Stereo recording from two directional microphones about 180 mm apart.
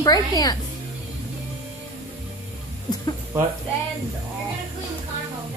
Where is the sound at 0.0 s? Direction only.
20° left (ahead or behind).